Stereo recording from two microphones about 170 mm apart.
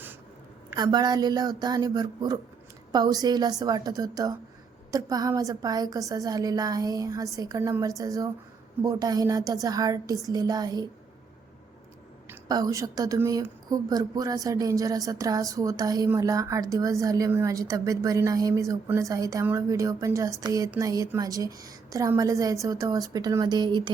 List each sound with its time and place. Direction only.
0.8 s a woman's voice: 25° right (ahead or behind)
12.3 s a woman's voice: 20° right (ahead or behind)